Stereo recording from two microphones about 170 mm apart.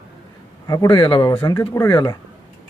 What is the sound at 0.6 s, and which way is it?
Speech, 20° left (ahead or behind).